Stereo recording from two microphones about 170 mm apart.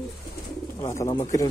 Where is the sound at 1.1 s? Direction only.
20° left (ahead or behind).